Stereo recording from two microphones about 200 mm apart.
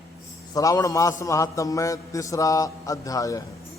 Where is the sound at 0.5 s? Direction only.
15° left (ahead or behind).